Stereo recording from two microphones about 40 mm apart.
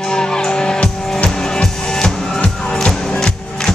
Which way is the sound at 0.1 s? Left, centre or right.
Centre.